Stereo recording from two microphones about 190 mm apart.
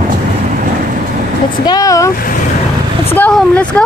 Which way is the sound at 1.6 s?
20° left (ahead or behind).